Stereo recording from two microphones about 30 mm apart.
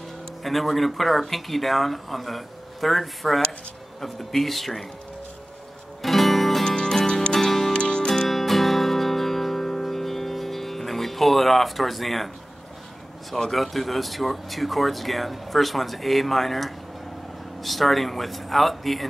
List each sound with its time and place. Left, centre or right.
0.4 s speech: centre
6.0 s music: centre
6.6 s music: left
7.7 s music: left
8.3 s music: centre
13.5 s speech: centre